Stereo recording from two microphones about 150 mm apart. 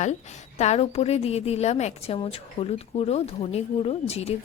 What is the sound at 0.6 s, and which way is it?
A woman's voice, 45° left (ahead or behind).